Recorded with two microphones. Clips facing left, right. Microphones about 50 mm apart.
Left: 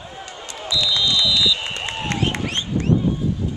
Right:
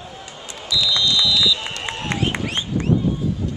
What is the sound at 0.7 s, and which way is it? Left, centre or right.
Run, centre.